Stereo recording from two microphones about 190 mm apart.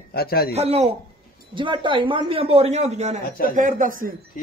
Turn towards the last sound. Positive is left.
turn(degrees=-45)  # may be behind; listen again after turning